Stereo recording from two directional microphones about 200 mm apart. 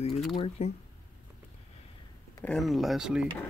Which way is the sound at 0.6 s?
30° left (ahead or behind).